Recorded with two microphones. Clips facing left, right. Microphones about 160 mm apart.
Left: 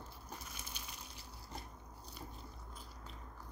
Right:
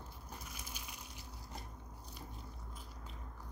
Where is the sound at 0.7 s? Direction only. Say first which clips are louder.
Right 1 dB; 10° right (ahead or behind).